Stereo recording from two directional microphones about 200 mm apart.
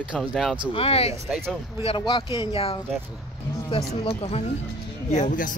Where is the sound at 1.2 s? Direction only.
5° right (ahead or behind).